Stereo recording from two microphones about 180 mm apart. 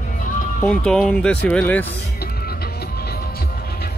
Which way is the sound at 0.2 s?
45° left (ahead or behind).